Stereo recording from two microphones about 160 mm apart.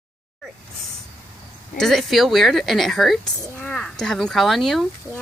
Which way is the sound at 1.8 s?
Centre (ahead or behind).